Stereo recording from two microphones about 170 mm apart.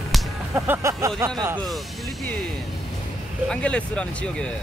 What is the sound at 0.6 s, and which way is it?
Speech, 15° right (ahead or behind).